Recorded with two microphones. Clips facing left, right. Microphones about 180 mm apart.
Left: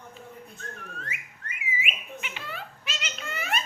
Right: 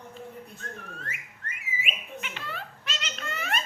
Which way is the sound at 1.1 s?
45° right (ahead or behind).